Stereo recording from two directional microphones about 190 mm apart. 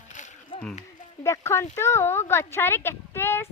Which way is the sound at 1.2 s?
15° left (ahead or behind).